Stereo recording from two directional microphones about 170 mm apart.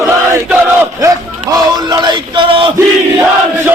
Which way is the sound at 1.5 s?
25° right (ahead or behind).